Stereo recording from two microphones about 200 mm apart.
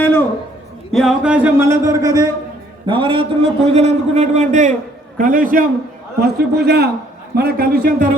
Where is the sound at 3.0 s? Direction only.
25° right (ahead or behind).